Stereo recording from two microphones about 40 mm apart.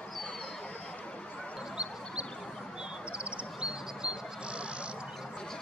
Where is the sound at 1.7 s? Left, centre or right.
Right.